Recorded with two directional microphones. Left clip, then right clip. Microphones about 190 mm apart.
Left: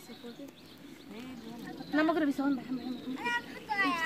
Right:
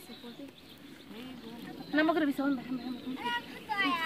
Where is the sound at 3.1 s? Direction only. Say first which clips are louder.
Left 1 dB; 45° left (ahead or behind).